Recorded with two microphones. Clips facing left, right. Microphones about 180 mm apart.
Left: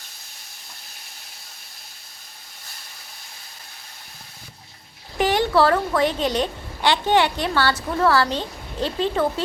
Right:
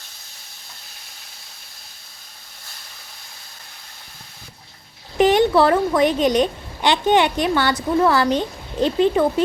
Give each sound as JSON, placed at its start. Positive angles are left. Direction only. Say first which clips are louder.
{"t": 5.1, "sound": "a child's voice", "louder": "right 4 dB", "side_deg": -20}